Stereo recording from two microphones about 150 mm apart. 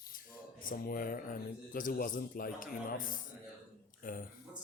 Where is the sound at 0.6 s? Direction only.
70° left (ahead or behind).